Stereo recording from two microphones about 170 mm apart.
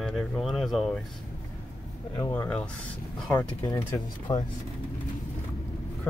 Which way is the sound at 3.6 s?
25° left (ahead or behind).